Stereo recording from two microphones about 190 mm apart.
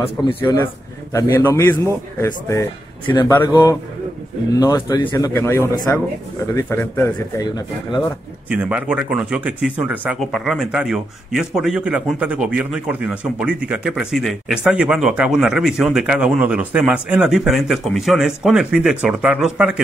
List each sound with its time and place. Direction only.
1.1 s a man's voice: 15° left (ahead or behind)
8.5 s speech: 5° right (ahead or behind)